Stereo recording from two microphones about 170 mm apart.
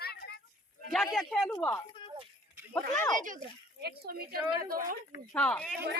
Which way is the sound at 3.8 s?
65° right (ahead or behind).